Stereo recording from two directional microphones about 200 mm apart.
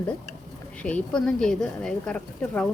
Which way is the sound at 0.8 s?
5° left (ahead or behind).